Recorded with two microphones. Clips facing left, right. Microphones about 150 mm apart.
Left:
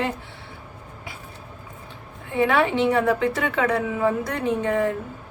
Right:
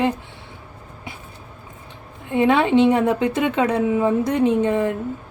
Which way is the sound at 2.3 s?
20° right (ahead or behind).